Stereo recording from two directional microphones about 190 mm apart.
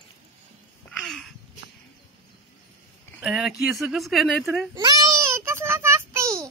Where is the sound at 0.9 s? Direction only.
Centre (ahead or behind).